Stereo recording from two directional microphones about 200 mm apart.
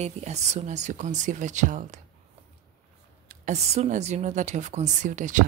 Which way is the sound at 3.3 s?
35° right (ahead or behind).